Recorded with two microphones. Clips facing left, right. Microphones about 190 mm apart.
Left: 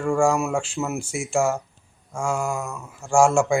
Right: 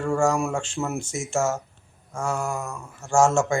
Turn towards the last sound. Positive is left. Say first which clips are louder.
# left 2 dB
turn(degrees=10)  # may be behind; listen again after turning